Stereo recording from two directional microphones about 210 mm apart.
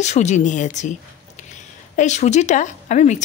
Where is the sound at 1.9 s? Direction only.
35° left (ahead or behind).